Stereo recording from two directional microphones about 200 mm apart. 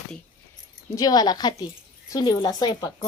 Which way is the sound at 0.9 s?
20° left (ahead or behind).